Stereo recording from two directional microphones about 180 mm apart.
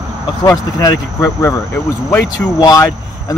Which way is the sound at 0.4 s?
20° left (ahead or behind).